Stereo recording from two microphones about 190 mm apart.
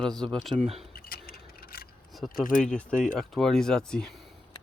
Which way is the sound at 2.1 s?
Centre (ahead or behind).